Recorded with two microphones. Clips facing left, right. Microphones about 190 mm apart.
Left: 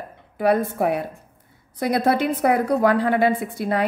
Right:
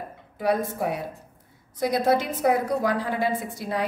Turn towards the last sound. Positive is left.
turn(degrees=60)  # may be behind; listen again after turning